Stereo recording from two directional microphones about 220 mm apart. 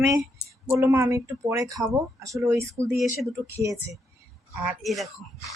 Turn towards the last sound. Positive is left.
turn(degrees=0)  # may be behind; listen again after turning